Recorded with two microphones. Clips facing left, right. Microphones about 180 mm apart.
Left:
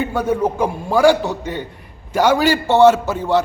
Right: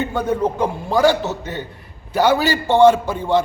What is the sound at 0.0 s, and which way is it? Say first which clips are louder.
A man's voice: left 1 dB; 10° left (ahead or behind).